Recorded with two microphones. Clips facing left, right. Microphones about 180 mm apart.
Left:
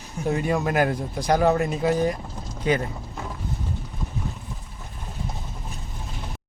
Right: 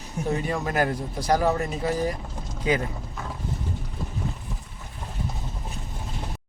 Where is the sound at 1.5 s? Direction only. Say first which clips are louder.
Left 4 dB; 70° left (ahead or behind).